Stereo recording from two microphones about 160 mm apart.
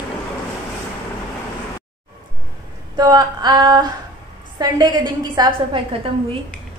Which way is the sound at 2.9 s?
25° right (ahead or behind).